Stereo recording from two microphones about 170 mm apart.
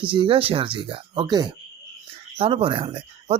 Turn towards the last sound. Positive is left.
turn(degrees=-40)  # may be behind; listen again after turning